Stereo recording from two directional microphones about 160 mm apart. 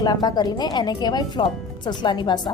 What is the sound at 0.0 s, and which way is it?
A woman's voice, 25° left (ahead or behind).